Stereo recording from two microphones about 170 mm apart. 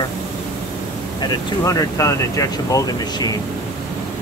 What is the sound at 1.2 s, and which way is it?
Speech, 25° left (ahead or behind).